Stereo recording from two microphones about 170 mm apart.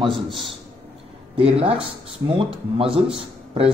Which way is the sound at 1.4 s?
35° right (ahead or behind).